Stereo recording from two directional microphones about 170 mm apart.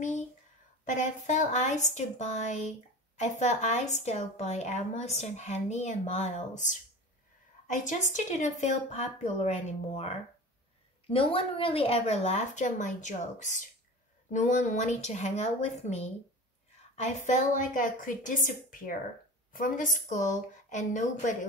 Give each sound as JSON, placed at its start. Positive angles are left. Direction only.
{"t": 0.8, "sound": "a woman's voice", "side_deg": 45}